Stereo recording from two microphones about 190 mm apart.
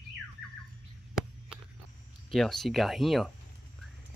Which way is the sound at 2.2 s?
Centre (ahead or behind).